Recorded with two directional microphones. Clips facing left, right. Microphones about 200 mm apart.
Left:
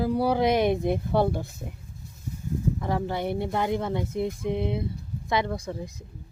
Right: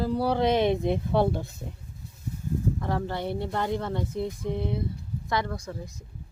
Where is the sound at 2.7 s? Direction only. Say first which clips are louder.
Left 2 dB; 15° left (ahead or behind).